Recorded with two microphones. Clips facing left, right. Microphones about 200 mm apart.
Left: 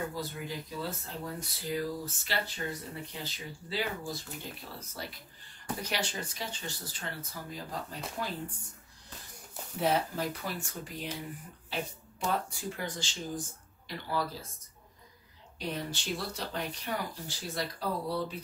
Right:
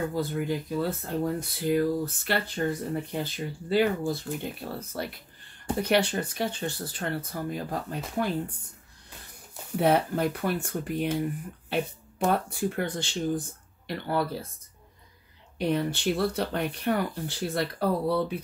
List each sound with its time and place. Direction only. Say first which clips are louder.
0.1 s speech: right 9 dB; 55° right (ahead or behind)
9.8 s speech: right 6 dB; 60° right (ahead or behind)
15.5 s speech: right 10 dB; 60° right (ahead or behind)